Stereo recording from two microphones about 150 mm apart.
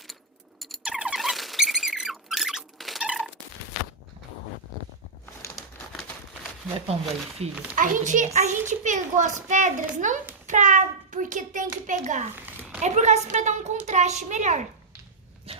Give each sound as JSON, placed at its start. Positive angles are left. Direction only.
{"t": 0.6, "sound": "squeak", "side_deg": 0}
{"t": 7.4, "sound": "a woman's voice", "side_deg": -45}
{"t": 7.8, "sound": "a child's voice", "side_deg": -60}
{"t": 15.5, "sound": "dog", "side_deg": -40}